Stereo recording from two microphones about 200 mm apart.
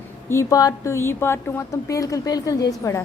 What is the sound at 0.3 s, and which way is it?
A woman's voice, 15° left (ahead or behind).